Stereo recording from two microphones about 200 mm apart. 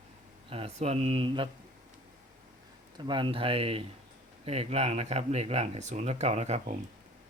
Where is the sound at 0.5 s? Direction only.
30° right (ahead or behind).